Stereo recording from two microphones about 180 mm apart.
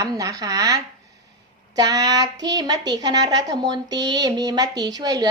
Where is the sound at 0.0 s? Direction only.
20° right (ahead or behind).